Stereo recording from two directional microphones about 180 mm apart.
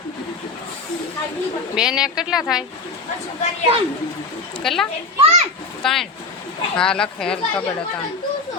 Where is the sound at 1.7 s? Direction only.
5° right (ahead or behind).